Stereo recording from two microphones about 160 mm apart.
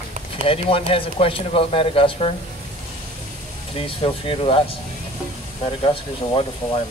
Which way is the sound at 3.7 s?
35° left (ahead or behind).